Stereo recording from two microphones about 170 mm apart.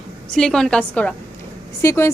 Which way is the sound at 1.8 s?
15° left (ahead or behind).